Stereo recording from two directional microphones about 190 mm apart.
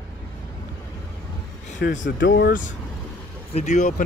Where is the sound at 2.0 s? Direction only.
75° left (ahead or behind).